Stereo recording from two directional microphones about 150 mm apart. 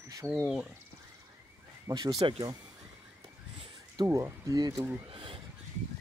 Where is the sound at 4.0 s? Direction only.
25° right (ahead or behind).